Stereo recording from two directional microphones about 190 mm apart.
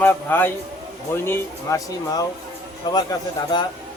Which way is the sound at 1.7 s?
15° left (ahead or behind).